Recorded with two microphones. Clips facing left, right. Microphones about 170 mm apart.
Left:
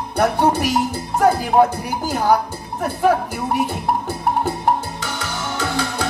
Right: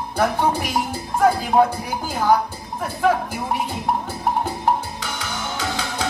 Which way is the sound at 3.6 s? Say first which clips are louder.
Left 2 dB; 70° left (ahead or behind).